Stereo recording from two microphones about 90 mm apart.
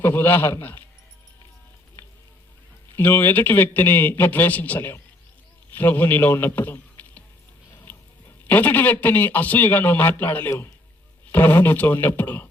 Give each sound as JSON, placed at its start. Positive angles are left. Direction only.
{"t": 0.0, "sound": "a man's voice", "side_deg": 25}
{"t": 2.9, "sound": "a man's voice", "side_deg": 20}
{"t": 7.9, "sound": "a sound", "side_deg": 20}
{"t": 8.4, "sound": "a man's voice", "side_deg": 20}